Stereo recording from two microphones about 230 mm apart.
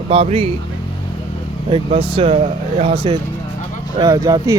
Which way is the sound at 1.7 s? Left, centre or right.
Right.